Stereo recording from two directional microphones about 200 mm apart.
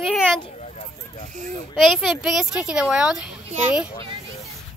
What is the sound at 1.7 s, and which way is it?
A woman's voice, centre (ahead or behind).